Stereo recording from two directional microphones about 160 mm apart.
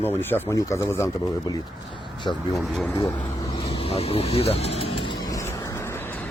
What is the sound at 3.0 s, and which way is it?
Speech, 25° left (ahead or behind).